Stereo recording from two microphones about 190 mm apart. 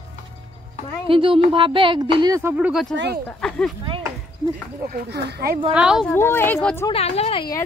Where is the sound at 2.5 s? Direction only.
5° right (ahead or behind).